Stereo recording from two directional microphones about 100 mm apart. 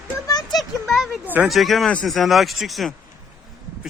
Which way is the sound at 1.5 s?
Centre (ahead or behind).